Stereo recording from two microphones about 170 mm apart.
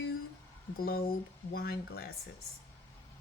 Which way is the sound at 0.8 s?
60° left (ahead or behind).